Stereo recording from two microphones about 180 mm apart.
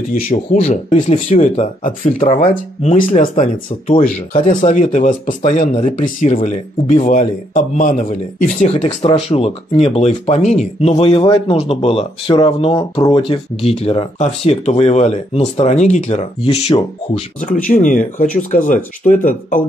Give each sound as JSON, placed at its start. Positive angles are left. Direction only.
{"t": 0.1, "sound": "speech", "side_deg": 45}
{"t": 4.5, "sound": "speech", "side_deg": 45}